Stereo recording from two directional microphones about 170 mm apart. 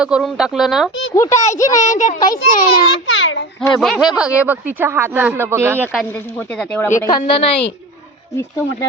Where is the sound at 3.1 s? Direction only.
90° left.